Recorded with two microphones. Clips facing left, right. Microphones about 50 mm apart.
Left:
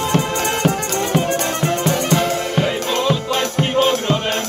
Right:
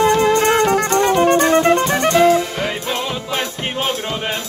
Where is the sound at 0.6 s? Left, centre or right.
Right.